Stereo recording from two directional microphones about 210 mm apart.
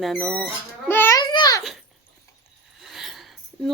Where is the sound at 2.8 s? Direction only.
Centre (ahead or behind).